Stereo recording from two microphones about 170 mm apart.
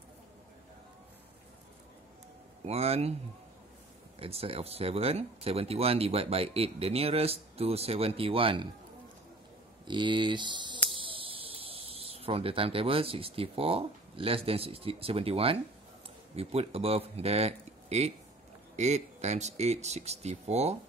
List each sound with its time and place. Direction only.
2.6 s speech: 35° right (ahead or behind)
4.2 s speech: 35° right (ahead or behind)
9.8 s speech: 30° right (ahead or behind)